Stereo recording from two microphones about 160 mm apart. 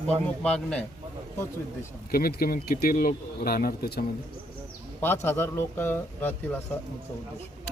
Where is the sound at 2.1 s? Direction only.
65° left (ahead or behind).